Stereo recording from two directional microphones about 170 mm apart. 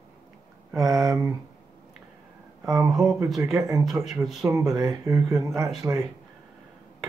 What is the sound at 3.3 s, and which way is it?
Speech, centre (ahead or behind).